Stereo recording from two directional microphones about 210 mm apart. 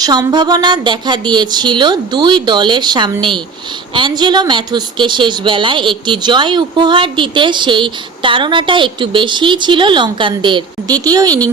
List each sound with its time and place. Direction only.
0.0 s a woman's voice: 20° right (ahead or behind)